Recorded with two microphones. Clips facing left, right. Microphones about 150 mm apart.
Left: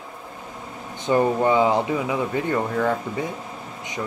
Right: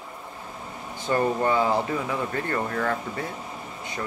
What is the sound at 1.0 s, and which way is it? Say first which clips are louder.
Speech: left 4 dB; 15° left (ahead or behind).